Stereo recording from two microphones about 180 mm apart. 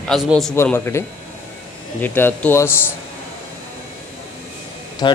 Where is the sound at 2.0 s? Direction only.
10° left (ahead or behind).